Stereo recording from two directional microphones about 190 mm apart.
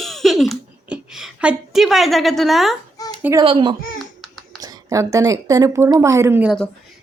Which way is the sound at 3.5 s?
25° right (ahead or behind).